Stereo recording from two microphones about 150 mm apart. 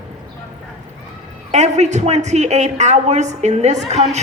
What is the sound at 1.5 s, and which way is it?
A woman's voice, 50° right (ahead or behind).